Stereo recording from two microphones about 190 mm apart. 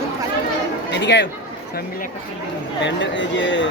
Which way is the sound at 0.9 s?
65° left (ahead or behind).